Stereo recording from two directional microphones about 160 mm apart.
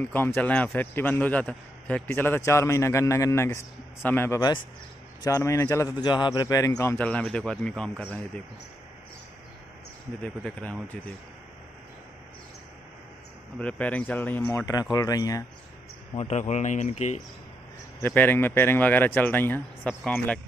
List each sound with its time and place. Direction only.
0.0 s a man's voice: 15° left (ahead or behind)
10.2 s a man's voice: 5° left (ahead or behind)
13.6 s a man's voice: 10° left (ahead or behind)
14.8 s a man's voice: 25° left (ahead or behind)
16.2 s speech: 45° left (ahead or behind)
18.0 s a man's voice: 10° left (ahead or behind)